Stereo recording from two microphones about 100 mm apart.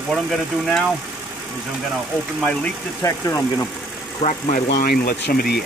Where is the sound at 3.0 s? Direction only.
30° left (ahead or behind).